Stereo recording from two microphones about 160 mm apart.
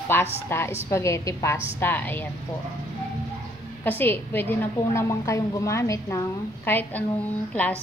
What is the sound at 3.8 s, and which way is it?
A woman's voice, 10° left (ahead or behind).